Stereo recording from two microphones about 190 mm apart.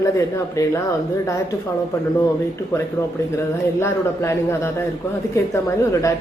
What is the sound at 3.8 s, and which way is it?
Speech, 10° left (ahead or behind).